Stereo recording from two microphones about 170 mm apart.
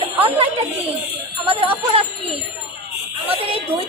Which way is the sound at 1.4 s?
35° right (ahead or behind).